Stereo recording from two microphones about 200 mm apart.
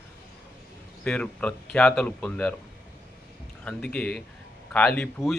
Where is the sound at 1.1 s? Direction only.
5° left (ahead or behind).